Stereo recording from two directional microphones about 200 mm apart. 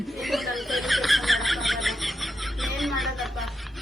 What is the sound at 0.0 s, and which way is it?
Snicker, centre (ahead or behind).